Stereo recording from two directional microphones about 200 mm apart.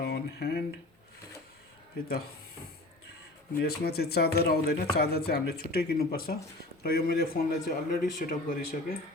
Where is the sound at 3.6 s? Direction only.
55° left (ahead or behind).